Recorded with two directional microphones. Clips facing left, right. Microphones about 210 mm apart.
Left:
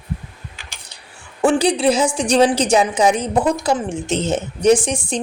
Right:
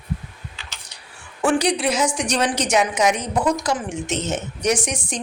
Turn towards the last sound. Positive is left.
turn(degrees=30)  # may be behind; listen again after turning